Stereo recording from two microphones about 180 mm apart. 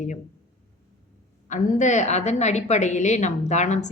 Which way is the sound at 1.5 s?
45° left (ahead or behind).